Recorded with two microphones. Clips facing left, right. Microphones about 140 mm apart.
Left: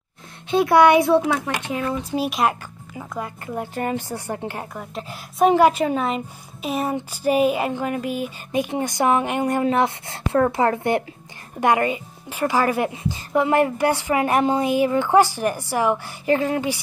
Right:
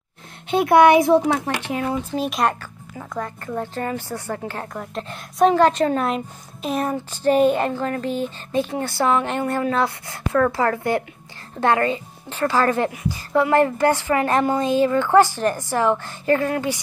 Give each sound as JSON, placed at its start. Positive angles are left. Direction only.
{"t": 0.5, "sound": "speech", "side_deg": -55}
{"t": 0.9, "sound": "a child's voice", "side_deg": -20}
{"t": 1.2, "sound": "speech", "side_deg": -40}
{"t": 2.1, "sound": "a woman's voice", "side_deg": 5}
{"t": 4.7, "sound": "a woman's voice", "side_deg": 5}